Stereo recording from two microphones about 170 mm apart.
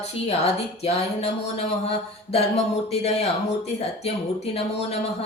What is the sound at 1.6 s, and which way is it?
Speech, 35° left (ahead or behind).